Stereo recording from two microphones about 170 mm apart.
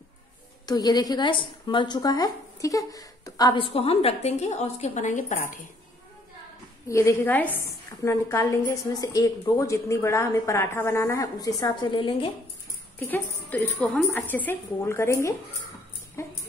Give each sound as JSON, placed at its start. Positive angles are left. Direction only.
{"t": 0.7, "sound": "a woman's voice", "side_deg": 25}
{"t": 6.9, "sound": "a woman's voice", "side_deg": 15}
{"t": 13.0, "sound": "a woman's voice", "side_deg": 10}
{"t": 16.2, "sound": "dog", "side_deg": 15}